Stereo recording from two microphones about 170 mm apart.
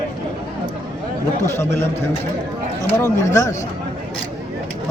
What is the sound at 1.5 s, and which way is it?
Speech, 15° left (ahead or behind).